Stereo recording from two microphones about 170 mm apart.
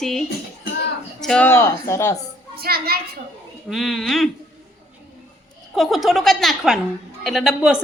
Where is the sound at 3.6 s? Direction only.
Centre (ahead or behind).